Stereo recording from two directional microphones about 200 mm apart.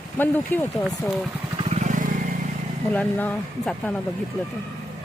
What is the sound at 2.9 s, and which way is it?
Speech, 5° left (ahead or behind).